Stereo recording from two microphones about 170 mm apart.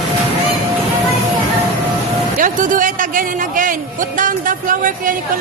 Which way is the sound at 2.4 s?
50° right (ahead or behind).